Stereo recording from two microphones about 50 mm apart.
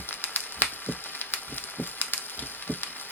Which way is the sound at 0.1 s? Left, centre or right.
Left.